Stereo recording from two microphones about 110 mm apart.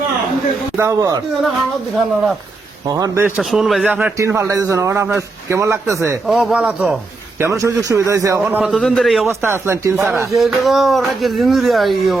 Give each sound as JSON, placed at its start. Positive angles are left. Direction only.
{"t": 0.8, "sound": "speech", "side_deg": -30}
{"t": 2.8, "sound": "speech", "side_deg": -35}
{"t": 3.3, "sound": "speech", "side_deg": -5}
{"t": 3.8, "sound": "a man's voice", "side_deg": -15}
{"t": 4.2, "sound": "a man's voice", "side_deg": -25}
{"t": 6.2, "sound": "a man's voice", "side_deg": -5}
{"t": 7.3, "sound": "a man's voice", "side_deg": -25}
{"t": 8.6, "sound": "speech", "side_deg": 0}
{"t": 9.2, "sound": "a man's voice", "side_deg": -20}
{"t": 10.3, "sound": "speech", "side_deg": 0}